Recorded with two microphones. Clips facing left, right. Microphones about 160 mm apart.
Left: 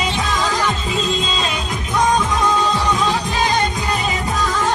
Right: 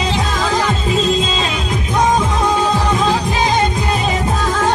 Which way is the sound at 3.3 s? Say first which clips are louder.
Right 3 dB; 25° right (ahead or behind).